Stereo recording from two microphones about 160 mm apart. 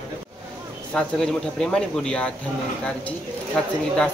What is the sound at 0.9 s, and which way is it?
Speech, 5° left (ahead or behind).